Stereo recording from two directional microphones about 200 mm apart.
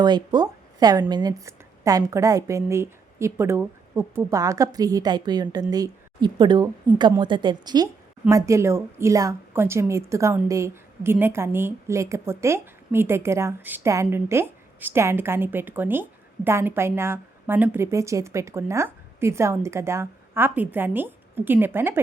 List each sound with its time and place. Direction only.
0.0 s a woman's voice: 20° right (ahead or behind)